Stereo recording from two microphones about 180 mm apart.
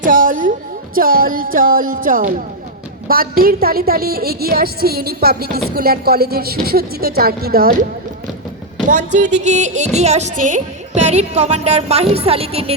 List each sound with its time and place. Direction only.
0.0 s music: 50° right (ahead or behind)
3.1 s a woman's voice: 55° right (ahead or behind)
8.9 s speech: 40° right (ahead or behind)